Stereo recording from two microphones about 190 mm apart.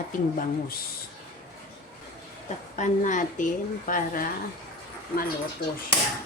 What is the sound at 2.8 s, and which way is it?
A woman's voice, 40° left (ahead or behind).